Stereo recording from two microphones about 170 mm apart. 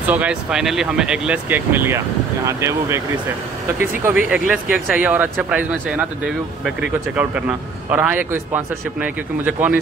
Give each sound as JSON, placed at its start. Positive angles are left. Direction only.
{"t": 0.0, "sound": "speech", "side_deg": -10}
{"t": 4.0, "sound": "speech", "side_deg": -10}